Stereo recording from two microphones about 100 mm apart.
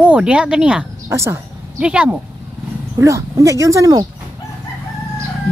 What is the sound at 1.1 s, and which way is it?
Speech, 30° right (ahead or behind).